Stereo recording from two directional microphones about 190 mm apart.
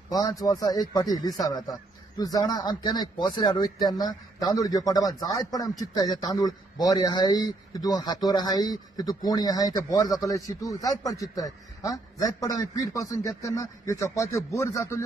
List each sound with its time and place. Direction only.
0.1 s a man's voice: 20° left (ahead or behind)